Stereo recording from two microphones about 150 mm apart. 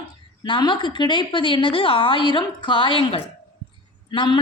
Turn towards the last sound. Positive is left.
turn(degrees=30)  # may be behind; listen again after turning